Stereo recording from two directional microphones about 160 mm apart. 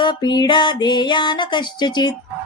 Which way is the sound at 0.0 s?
30° left (ahead or behind).